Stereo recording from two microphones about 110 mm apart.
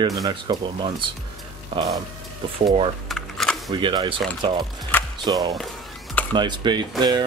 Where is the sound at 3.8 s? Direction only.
45° right (ahead or behind).